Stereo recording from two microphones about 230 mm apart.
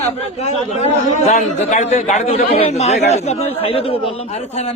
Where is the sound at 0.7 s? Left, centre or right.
Left.